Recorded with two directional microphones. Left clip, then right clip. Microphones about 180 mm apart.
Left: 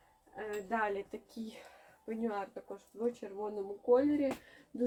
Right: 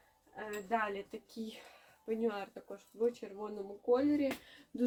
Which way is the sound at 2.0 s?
25° right (ahead or behind).